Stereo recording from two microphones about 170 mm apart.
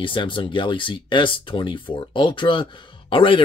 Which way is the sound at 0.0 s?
30° left (ahead or behind).